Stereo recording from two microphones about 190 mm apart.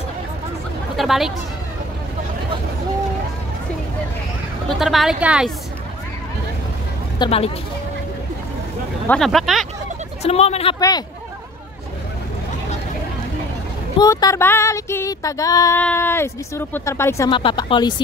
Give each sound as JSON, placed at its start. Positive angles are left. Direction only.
{"t": 0.9, "sound": "a woman's voice", "side_deg": 0}
{"t": 4.6, "sound": "a woman's voice", "side_deg": 0}
{"t": 7.2, "sound": "speech", "side_deg": 30}
{"t": 9.0, "sound": "a woman's voice", "side_deg": 5}
{"t": 10.2, "sound": "speech", "side_deg": 35}
{"t": 10.8, "sound": "speech", "side_deg": 20}
{"t": 13.9, "sound": "female singing", "side_deg": 20}
{"t": 17.3, "sound": "speech", "side_deg": 25}